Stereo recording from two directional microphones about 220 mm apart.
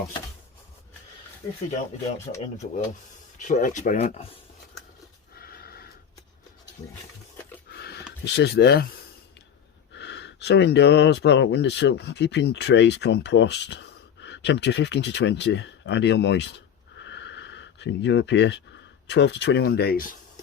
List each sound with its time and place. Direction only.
2.6 s speech: 35° left (ahead or behind)
5.4 s horse: 45° left (ahead or behind)
7.7 s a sound: 45° left (ahead or behind)
8.2 s speech: 50° left (ahead or behind)
9.9 s speech: 50° left (ahead or behind)
17.0 s a sound: 55° left (ahead or behind)
19.0 s speech: 50° left (ahead or behind)